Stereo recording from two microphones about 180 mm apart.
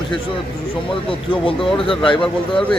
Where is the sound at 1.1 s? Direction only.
30° left (ahead or behind).